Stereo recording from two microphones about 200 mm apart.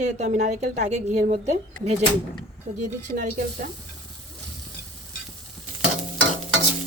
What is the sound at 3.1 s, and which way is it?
Speech, 45° right (ahead or behind).